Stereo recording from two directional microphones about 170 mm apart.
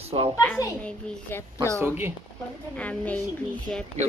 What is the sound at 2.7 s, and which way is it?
A woman's voice, 10° left (ahead or behind).